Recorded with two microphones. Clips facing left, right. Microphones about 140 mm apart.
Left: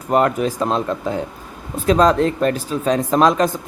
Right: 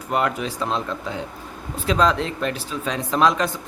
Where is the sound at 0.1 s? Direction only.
45° left (ahead or behind).